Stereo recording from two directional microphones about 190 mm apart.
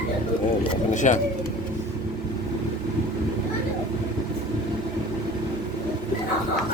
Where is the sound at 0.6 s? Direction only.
40° left (ahead or behind).